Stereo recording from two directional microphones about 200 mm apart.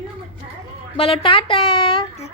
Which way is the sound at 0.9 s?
30° left (ahead or behind).